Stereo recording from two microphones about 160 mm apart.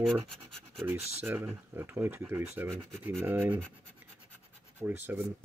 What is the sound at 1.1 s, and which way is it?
Speech, 15° right (ahead or behind).